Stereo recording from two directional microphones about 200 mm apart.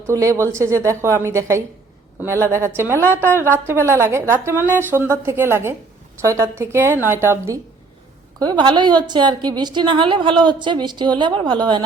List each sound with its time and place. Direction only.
0.1 s a woman's voice: 15° right (ahead or behind)